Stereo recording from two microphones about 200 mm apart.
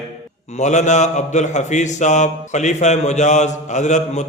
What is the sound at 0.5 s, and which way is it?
A man's voice, 35° left (ahead or behind).